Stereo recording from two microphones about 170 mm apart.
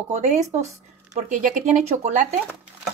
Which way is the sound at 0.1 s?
45° right (ahead or behind).